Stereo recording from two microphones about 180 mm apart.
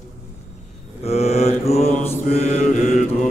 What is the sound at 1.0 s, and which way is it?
Mantra, 35° left (ahead or behind).